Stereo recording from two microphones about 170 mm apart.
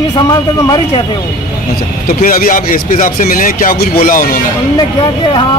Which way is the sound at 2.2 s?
50° left (ahead or behind).